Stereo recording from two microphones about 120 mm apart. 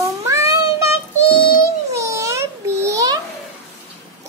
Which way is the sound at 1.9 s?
25° right (ahead or behind).